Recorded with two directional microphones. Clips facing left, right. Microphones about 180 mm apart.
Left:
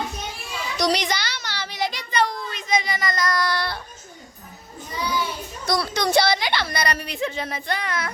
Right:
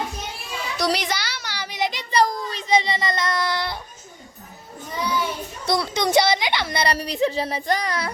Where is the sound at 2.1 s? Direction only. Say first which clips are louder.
Right 5 dB; 40° right (ahead or behind); by 3.8 s 20° right (ahead or behind).